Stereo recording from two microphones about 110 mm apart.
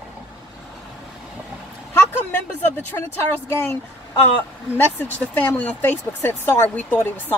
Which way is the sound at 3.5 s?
20° left (ahead or behind).